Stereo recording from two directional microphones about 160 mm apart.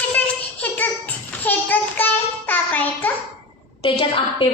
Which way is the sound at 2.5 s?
10° left (ahead or behind).